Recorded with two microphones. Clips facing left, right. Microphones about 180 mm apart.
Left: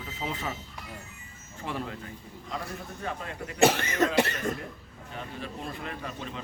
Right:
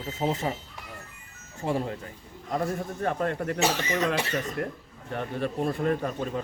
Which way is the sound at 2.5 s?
50° right (ahead or behind).